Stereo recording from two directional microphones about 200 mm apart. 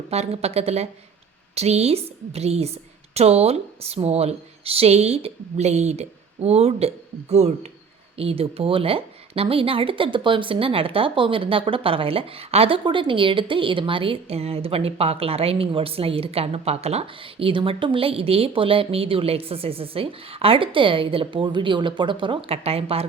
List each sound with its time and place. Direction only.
0.1 s a woman's voice: 30° right (ahead or behind)